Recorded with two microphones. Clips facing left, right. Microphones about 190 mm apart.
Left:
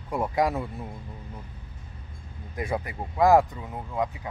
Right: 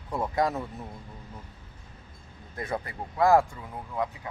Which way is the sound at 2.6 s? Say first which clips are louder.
Left 3 dB; 15° left (ahead or behind).